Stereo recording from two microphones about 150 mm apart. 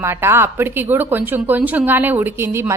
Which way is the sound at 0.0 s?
15° right (ahead or behind).